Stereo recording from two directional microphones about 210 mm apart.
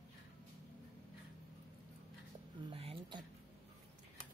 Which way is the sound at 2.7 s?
25° right (ahead or behind).